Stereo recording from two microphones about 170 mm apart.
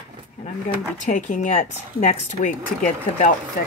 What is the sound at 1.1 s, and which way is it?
Speech, 45° left (ahead or behind).